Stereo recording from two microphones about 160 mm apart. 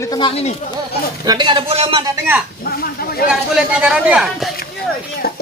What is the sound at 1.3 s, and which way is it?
Speech, 30° right (ahead or behind).